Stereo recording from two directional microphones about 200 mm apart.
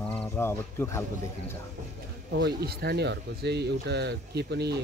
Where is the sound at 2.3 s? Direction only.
55° right (ahead or behind).